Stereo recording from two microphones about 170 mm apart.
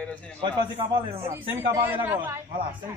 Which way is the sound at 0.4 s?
30° right (ahead or behind).